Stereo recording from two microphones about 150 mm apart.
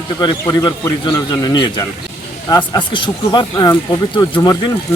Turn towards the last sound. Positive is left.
turn(degrees=25)  # may be behind; listen again after turning